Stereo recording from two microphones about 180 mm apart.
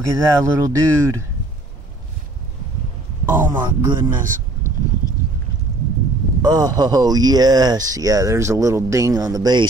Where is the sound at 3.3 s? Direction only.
10° right (ahead or behind).